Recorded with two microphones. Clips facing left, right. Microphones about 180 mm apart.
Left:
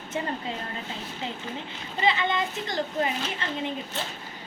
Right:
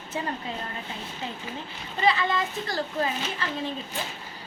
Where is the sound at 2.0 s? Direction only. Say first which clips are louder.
Right 1 dB; 20° left (ahead or behind).